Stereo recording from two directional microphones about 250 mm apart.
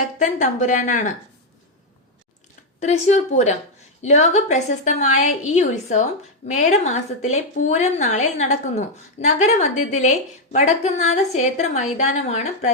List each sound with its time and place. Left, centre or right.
0.2 s a woman's voice: left
2.8 s a woman's voice: left